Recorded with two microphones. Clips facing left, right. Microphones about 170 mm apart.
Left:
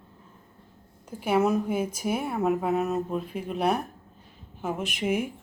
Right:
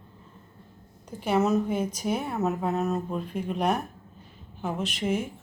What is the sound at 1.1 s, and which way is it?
A woman's voice, 10° left (ahead or behind).